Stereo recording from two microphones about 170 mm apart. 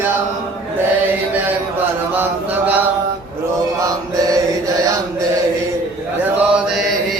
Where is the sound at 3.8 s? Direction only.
20° right (ahead or behind).